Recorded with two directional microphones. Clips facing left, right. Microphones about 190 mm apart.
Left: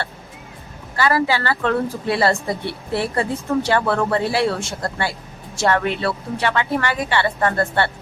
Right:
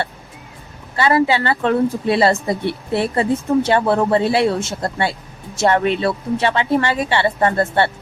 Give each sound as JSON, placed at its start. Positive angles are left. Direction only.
{"t": 0.9, "sound": "speech", "side_deg": -25}